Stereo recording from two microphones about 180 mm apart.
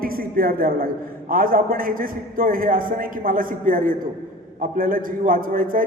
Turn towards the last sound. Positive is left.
turn(degrees=-50)  # may be behind; listen again after turning